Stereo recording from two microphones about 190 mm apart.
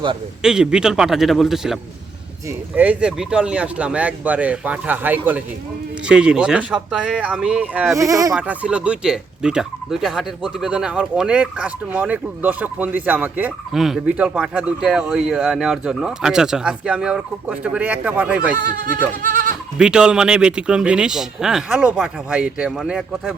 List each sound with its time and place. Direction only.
0.4 s speech: 5° right (ahead or behind)
8.4 s speech: 5° right (ahead or behind)
18.5 s speech: 45° right (ahead or behind)
19.8 s speech: 5° right (ahead or behind)